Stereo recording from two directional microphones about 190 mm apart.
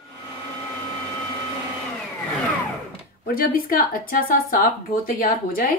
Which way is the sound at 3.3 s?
50° left (ahead or behind).